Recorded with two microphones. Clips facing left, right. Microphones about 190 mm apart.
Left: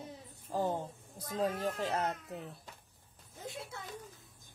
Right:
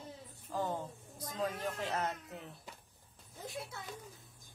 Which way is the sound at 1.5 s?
10° left (ahead or behind).